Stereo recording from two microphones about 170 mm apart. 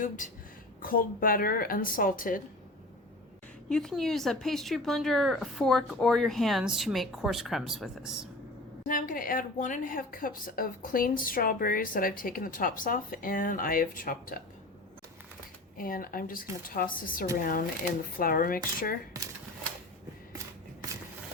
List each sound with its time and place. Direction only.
0.8 s speech: 55° left (ahead or behind)
3.7 s speech: 5° left (ahead or behind)
8.9 s speech: 55° left (ahead or behind)
15.8 s speech: 55° left (ahead or behind)